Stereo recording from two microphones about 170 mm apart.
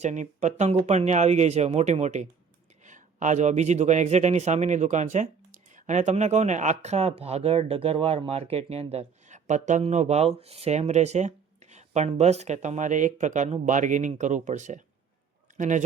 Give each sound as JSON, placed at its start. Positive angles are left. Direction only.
{"t": 0.0, "sound": "speech", "side_deg": -45}